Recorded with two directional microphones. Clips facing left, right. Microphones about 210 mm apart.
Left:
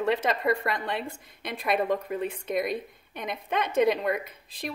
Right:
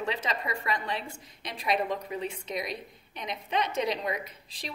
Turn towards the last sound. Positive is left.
turn(degrees=55)  # may be behind; listen again after turning